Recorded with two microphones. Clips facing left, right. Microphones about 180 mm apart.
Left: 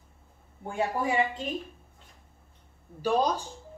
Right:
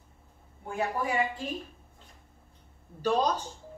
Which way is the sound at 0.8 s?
25° left (ahead or behind).